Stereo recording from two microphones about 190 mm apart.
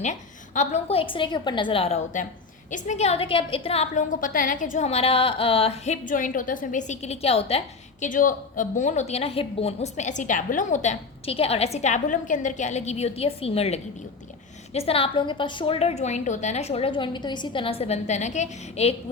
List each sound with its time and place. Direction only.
0.0 s a woman's voice: 40° left (ahead or behind)
8.0 s a woman's voice: 45° left (ahead or behind)